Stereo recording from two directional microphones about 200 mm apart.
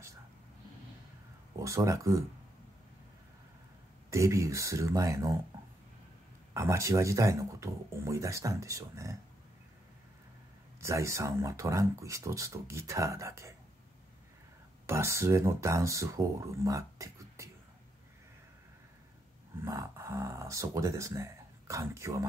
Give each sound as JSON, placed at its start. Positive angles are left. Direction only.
{"t": 1.6, "sound": "speech", "side_deg": -15}
{"t": 4.1, "sound": "speech", "side_deg": -15}
{"t": 6.5, "sound": "speech", "side_deg": -15}
{"t": 10.8, "sound": "speech", "side_deg": -15}
{"t": 14.9, "sound": "speech", "side_deg": -15}
{"t": 19.6, "sound": "speech", "side_deg": -15}